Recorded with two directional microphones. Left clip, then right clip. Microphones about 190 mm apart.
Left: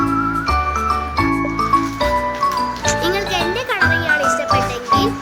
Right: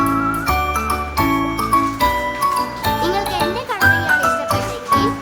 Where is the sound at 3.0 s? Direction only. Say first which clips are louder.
Even; centre (ahead or behind).